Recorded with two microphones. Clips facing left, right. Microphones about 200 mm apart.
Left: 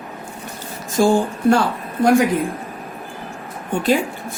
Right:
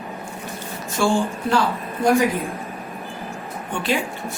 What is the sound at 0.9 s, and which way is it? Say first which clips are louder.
Speech: left 4 dB; 40° left (ahead or behind).